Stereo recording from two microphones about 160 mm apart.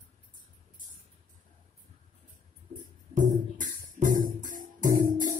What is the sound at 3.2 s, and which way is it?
Music, 55° right (ahead or behind).